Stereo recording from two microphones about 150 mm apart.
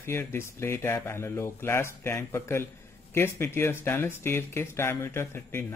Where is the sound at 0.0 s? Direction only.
15° left (ahead or behind).